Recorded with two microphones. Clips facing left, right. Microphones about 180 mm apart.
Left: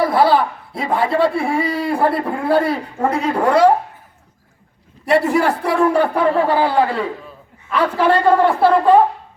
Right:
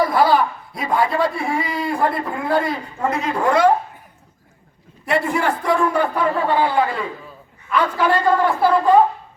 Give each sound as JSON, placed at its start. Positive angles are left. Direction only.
{"t": 0.0, "sound": "a man's voice", "side_deg": 30}
{"t": 5.0, "sound": "speech", "side_deg": 35}